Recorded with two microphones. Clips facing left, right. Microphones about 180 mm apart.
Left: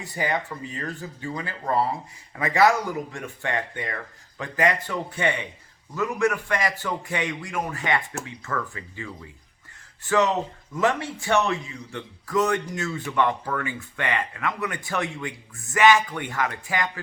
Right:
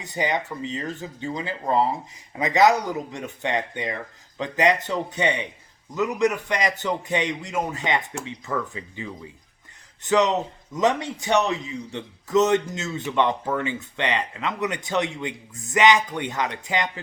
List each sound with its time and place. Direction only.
0.0 s a man's voice: 20° right (ahead or behind)